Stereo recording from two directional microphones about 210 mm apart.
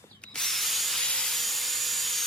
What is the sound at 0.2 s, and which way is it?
Tools, centre (ahead or behind).